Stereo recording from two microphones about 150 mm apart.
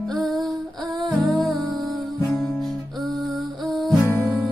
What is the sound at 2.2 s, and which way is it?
Music, 15° left (ahead or behind).